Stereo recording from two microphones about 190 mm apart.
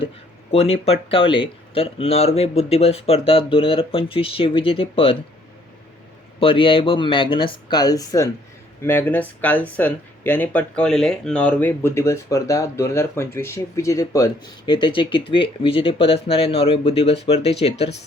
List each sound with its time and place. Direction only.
0.5 s speech: 30° left (ahead or behind)
6.4 s speech: 30° left (ahead or behind)